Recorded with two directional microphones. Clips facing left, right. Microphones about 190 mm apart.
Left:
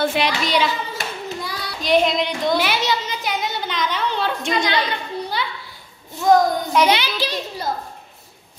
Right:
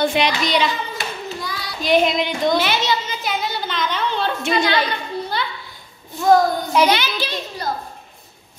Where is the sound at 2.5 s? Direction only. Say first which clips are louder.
Right 1 dB; 10° left (ahead or behind).